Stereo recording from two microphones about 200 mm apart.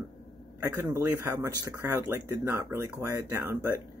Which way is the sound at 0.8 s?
10° right (ahead or behind).